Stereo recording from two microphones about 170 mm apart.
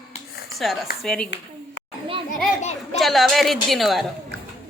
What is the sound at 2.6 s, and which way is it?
Speech, 40° left (ahead or behind).